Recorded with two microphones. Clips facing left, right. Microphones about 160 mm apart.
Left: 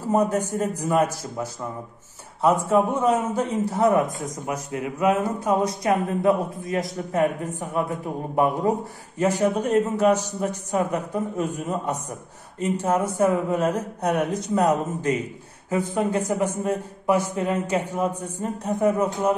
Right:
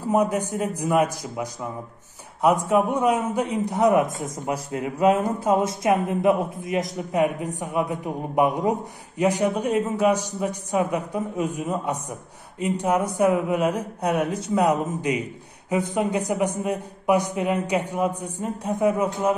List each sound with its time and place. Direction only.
0.1 s a man's voice: 10° right (ahead or behind)